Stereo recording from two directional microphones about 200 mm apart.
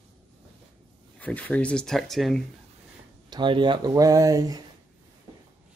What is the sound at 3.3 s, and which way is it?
Speech, 25° right (ahead or behind).